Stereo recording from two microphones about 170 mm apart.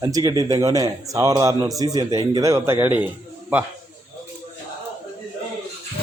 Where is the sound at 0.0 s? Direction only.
20° right (ahead or behind).